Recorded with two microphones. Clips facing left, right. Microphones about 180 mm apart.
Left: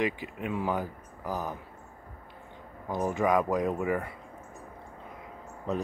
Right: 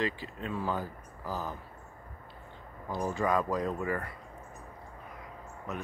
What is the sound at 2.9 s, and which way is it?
Speech, 20° left (ahead or behind).